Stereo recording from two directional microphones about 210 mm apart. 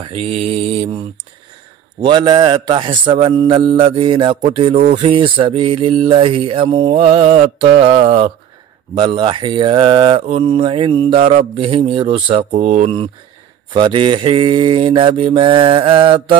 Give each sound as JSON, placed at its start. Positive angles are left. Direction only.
{"t": 0.0, "sound": "mantra", "side_deg": -30}
{"t": 2.0, "sound": "mantra", "side_deg": -20}
{"t": 13.7, "sound": "mantra", "side_deg": -25}